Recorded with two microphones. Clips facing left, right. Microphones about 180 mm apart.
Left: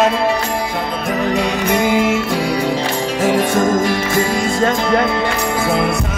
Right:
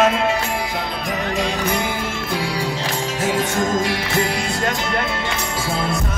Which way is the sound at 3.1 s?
60° left (ahead or behind).